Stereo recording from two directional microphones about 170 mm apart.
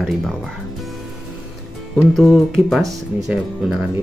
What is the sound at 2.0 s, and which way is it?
Speech, centre (ahead or behind).